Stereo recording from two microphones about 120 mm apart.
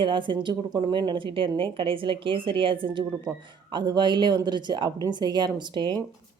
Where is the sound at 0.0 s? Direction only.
45° right (ahead or behind).